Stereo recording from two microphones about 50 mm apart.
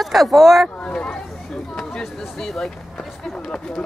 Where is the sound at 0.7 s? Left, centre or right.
Centre.